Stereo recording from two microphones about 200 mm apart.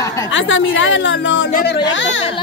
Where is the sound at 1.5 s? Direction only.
50° left (ahead or behind); by 2.2 s 70° left (ahead or behind).